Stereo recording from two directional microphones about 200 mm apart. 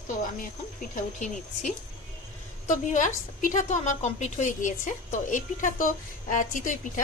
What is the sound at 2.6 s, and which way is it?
A woman's voice, 40° left (ahead or behind).